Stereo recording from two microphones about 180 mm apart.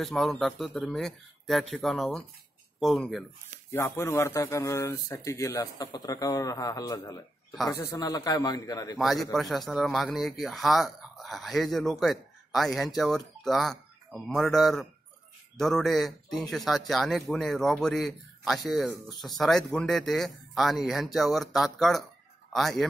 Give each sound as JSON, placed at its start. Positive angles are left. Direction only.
{"t": 0.0, "sound": "speech", "side_deg": 0}
{"t": 3.7, "sound": "a man's voice", "side_deg": 15}
{"t": 8.9, "sound": "speech", "side_deg": 0}